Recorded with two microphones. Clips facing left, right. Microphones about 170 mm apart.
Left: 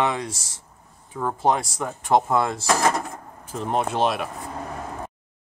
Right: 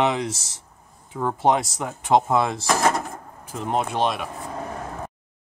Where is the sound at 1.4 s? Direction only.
20° right (ahead or behind).